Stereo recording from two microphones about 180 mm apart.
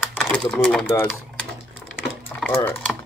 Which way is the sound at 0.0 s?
Centre (ahead or behind).